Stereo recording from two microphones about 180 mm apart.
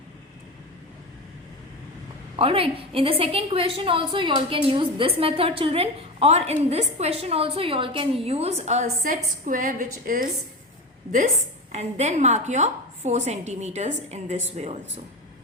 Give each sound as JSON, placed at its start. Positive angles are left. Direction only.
{"t": 2.3, "sound": "a woman's voice", "side_deg": -30}
{"t": 11.7, "sound": "a woman's voice", "side_deg": -40}